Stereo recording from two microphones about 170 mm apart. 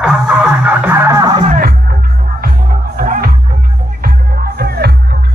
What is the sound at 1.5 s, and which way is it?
Music, 65° right (ahead or behind).